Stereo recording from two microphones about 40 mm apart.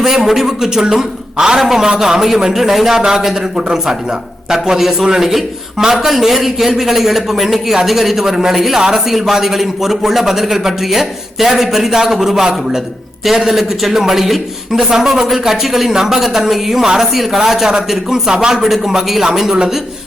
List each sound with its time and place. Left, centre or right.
0.0 s a man's voice: centre
16.8 s a man's voice: centre